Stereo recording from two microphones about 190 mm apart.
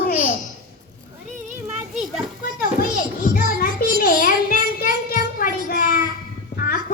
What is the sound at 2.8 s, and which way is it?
Music, 50° left (ahead or behind).